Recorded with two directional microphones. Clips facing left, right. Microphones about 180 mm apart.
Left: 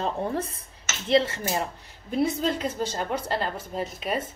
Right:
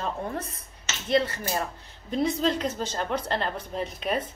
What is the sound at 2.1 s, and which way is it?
A woman's voice, 5° left (ahead or behind).